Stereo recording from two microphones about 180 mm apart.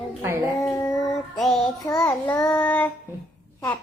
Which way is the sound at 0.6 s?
15° left (ahead or behind).